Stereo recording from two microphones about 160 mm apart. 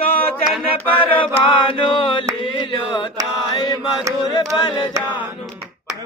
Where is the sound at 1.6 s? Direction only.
30° left (ahead or behind).